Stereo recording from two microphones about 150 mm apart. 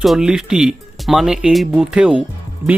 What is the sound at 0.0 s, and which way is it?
Speech, 5° right (ahead or behind).